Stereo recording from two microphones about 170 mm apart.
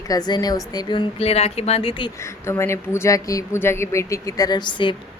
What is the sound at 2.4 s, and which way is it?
A woman's voice, 15° left (ahead or behind).